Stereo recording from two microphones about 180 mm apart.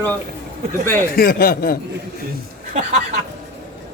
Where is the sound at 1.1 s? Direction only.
55° left (ahead or behind).